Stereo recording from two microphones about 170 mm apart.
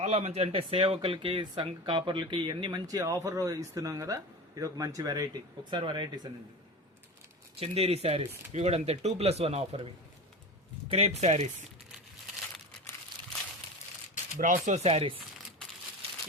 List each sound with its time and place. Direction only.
0.0 s speech: 40° right (ahead or behind)
7.6 s speech: 35° right (ahead or behind)
14.3 s speech: 50° right (ahead or behind); by 15.2 s 35° right (ahead or behind)